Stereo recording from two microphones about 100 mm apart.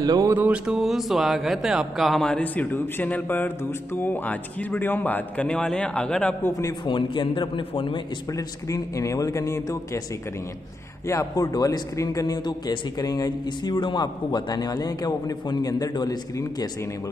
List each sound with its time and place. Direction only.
0.0 s music: 35° right (ahead or behind)
0.5 s speech: 5° right (ahead or behind)
6.9 s a man's voice: 55° left (ahead or behind)
8.3 s a man's voice: 35° left (ahead or behind)
11.1 s a man's voice: 35° left (ahead or behind)